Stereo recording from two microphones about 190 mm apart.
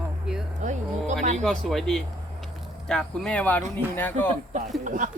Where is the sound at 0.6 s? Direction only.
40° right (ahead or behind).